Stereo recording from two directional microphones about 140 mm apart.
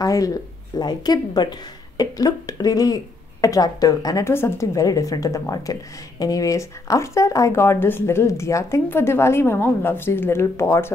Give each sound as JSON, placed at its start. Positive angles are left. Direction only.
{"t": 0.0, "sound": "a woman's voice", "side_deg": 25}